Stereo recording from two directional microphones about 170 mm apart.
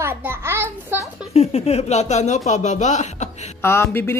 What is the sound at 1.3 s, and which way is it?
Speech, 40° left (ahead or behind).